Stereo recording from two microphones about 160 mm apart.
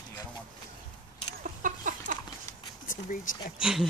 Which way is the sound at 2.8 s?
60° left (ahead or behind).